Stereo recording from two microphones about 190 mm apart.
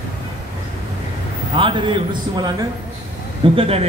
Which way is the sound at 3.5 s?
30° right (ahead or behind).